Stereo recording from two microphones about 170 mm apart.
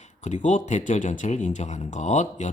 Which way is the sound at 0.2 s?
45° left (ahead or behind).